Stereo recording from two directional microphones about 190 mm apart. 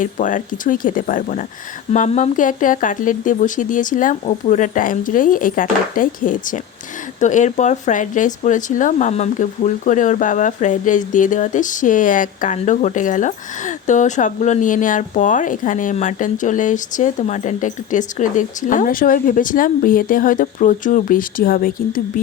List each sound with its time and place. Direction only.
0.0 s speech: 45° left (ahead or behind)